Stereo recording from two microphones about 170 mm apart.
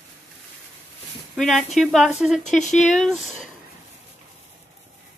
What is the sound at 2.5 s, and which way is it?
Speech, 45° left (ahead or behind).